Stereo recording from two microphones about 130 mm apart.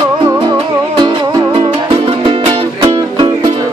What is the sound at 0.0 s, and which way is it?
Music, 30° right (ahead or behind).